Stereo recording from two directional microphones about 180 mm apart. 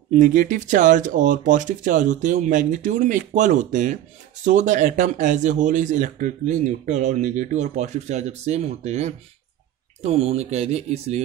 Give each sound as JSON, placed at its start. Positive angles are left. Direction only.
{"t": 0.1, "sound": "speech", "side_deg": -45}